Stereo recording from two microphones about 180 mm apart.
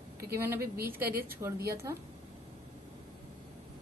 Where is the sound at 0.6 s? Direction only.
55° right (ahead or behind).